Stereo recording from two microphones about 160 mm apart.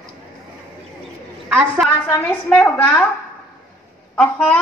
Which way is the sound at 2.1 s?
5° left (ahead or behind).